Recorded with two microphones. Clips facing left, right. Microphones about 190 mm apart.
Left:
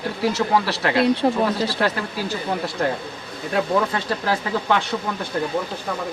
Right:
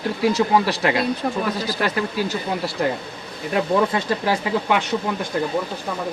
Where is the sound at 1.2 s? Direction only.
25° left (ahead or behind).